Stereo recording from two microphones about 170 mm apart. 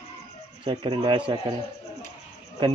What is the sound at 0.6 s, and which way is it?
Speech, 30° right (ahead or behind).